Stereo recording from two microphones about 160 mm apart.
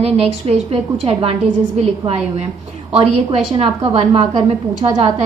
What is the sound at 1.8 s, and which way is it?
Speech, 40° right (ahead or behind).